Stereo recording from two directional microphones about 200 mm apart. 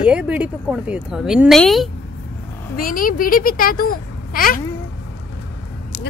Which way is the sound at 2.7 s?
45° left (ahead or behind).